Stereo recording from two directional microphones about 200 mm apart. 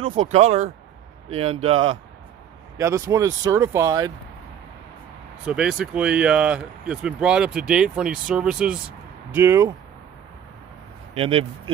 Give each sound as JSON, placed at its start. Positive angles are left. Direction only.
{"t": 0.3, "sound": "speech", "side_deg": -30}
{"t": 2.8, "sound": "speech", "side_deg": -15}
{"t": 5.5, "sound": "speech", "side_deg": -5}
{"t": 11.1, "sound": "speech", "side_deg": -30}